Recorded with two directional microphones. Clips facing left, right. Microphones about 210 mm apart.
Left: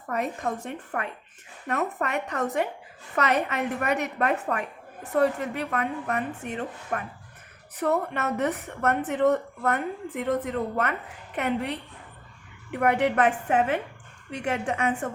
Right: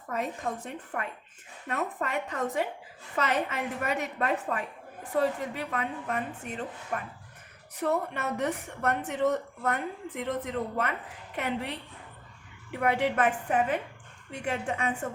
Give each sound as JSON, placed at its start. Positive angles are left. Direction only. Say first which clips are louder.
{"t": 0.1, "sound": "a woman's voice", "louder": "left 4 dB", "side_deg": 70}
{"t": 12.7, "sound": "a woman's voice", "louder": "left 4 dB", "side_deg": 65}